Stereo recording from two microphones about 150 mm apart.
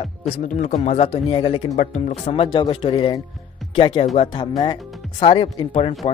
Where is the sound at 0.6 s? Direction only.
50° left (ahead or behind).